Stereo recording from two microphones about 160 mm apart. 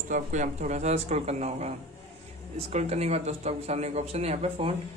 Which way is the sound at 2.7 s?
45° right (ahead or behind).